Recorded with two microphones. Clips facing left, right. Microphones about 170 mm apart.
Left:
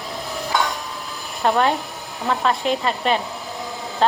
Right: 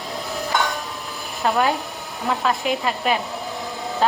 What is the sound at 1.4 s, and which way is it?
A woman's voice, centre (ahead or behind).